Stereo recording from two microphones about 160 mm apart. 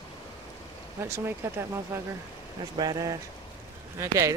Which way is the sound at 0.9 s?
15° right (ahead or behind).